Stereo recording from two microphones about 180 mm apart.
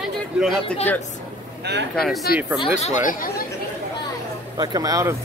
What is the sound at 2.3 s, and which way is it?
Speech, 60° left (ahead or behind).